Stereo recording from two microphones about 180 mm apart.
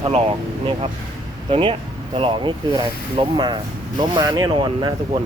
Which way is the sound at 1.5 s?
30° right (ahead or behind).